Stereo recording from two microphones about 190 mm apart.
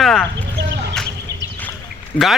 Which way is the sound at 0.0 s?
Centre (ahead or behind).